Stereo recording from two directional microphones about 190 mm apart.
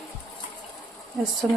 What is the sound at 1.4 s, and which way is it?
Speech, centre (ahead or behind).